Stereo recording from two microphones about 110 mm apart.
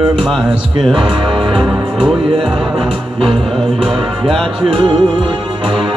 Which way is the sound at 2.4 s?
55° right (ahead or behind).